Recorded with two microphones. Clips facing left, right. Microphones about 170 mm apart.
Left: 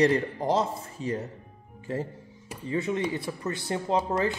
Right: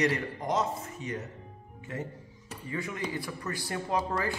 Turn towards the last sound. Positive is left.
turn(degrees=20)  # may be behind; listen again after turning